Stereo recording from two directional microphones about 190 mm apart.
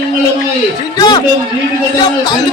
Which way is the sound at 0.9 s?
25° left (ahead or behind).